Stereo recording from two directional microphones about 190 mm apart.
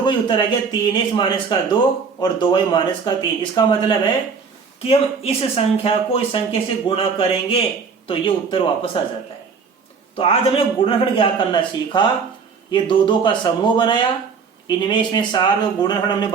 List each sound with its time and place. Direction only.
0.0 s speech: 25° left (ahead or behind)
10.2 s speech: 30° left (ahead or behind)